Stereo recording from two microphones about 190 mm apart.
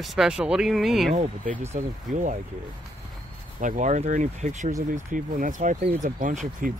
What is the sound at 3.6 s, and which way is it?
Speech, 40° right (ahead or behind).